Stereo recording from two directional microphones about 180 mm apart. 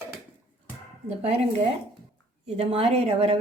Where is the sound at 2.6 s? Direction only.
30° right (ahead or behind).